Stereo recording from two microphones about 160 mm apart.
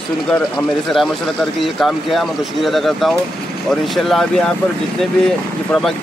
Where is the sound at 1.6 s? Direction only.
Centre (ahead or behind).